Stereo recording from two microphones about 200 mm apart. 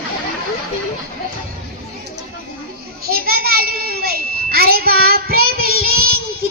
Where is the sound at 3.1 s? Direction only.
50° right (ahead or behind).